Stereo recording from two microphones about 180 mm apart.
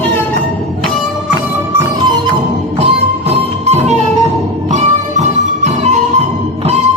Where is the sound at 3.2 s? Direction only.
35° right (ahead or behind).